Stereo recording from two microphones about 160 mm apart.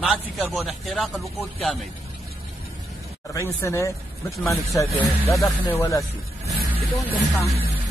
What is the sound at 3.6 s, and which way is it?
A man's voice, 20° left (ahead or behind).